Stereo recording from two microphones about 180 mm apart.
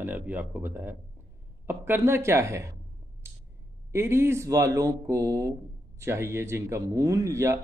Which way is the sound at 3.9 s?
15° right (ahead or behind).